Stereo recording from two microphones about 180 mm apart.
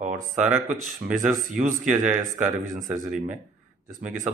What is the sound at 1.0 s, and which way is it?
Speech, 60° right (ahead or behind).